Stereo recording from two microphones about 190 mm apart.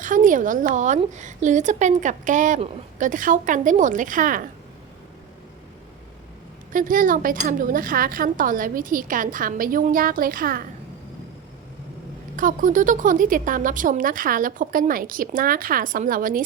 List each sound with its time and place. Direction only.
0.0 s a woman's voice: 45° right (ahead or behind)
6.7 s speech: 45° right (ahead or behind)
12.4 s speech: 45° right (ahead or behind)